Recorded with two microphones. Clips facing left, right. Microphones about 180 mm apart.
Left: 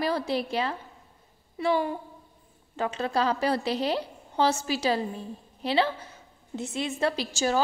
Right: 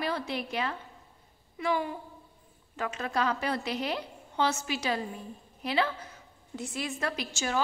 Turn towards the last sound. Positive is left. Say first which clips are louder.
# left 5 dB
turn(degrees=35)  # may be behind; listen again after turning